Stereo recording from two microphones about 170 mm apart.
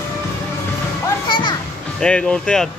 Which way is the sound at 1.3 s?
30° left (ahead or behind).